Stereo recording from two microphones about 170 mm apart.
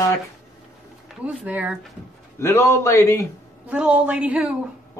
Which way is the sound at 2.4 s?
15° left (ahead or behind).